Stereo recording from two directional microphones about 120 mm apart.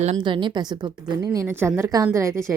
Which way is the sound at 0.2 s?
40° right (ahead or behind).